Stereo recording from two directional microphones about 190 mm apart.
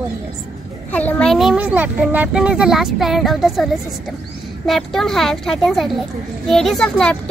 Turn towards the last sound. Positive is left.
turn(degrees=5)  # may be behind; listen again after turning